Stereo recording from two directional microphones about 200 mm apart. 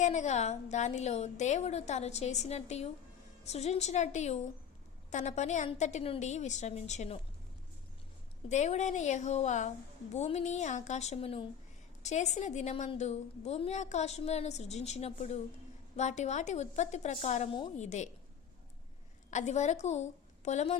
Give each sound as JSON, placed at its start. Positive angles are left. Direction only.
{"t": 0.0, "sound": "a woman's voice", "side_deg": 35}
{"t": 8.4, "sound": "a woman's voice", "side_deg": 35}
{"t": 19.3, "sound": "a woman's voice", "side_deg": 35}